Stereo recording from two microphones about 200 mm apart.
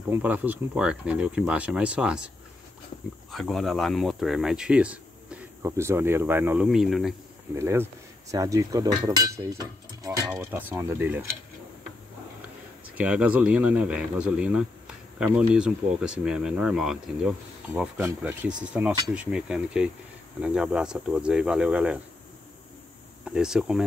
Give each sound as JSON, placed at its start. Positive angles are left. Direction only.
{"t": 0.1, "sound": "speech", "side_deg": -10}
{"t": 7.5, "sound": "cutlery", "side_deg": -10}
{"t": 12.9, "sound": "cutlery", "side_deg": -5}
{"t": 15.1, "sound": "speech", "side_deg": -5}
{"t": 17.7, "sound": "cutlery", "side_deg": -5}
{"t": 18.6, "sound": "speech", "side_deg": -5}
{"t": 23.2, "sound": "speech", "side_deg": -5}